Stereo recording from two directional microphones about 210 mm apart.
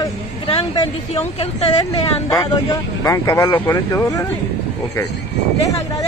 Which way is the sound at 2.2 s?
15° left (ahead or behind).